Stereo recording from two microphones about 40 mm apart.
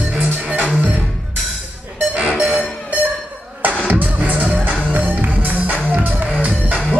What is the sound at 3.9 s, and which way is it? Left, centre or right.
Music, right.